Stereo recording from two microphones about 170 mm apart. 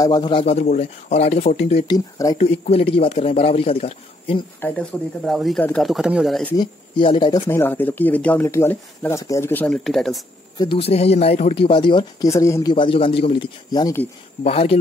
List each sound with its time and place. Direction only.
0.0 s speech: 25° left (ahead or behind)
1.9 s speech: 20° left (ahead or behind)
2.3 s speech: 40° left (ahead or behind)
4.6 s speech: 10° left (ahead or behind)
6.5 s speech: 25° left (ahead or behind)
7.4 s speech: 15° left (ahead or behind)
10.6 s speech: 30° left (ahead or behind)
12.7 s speech: 30° left (ahead or behind)
14.4 s speech: 35° left (ahead or behind)